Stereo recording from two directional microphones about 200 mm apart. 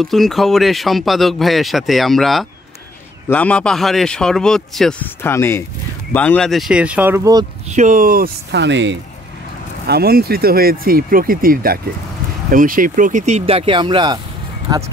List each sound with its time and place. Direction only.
0.0 s speech: centre (ahead or behind)
5.3 s speech: 15° left (ahead or behind); by 7.4 s 15° right (ahead or behind)
7.7 s speech: 40° right (ahead or behind); by 9.0 s 65° right (ahead or behind)
9.8 s speech: 50° right (ahead or behind); by 14.2 s 20° right (ahead or behind)